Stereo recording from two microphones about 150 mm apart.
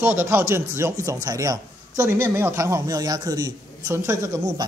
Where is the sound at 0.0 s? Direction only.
15° right (ahead or behind).